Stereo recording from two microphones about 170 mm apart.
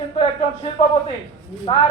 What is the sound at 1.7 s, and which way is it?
Speech, 30° left (ahead or behind).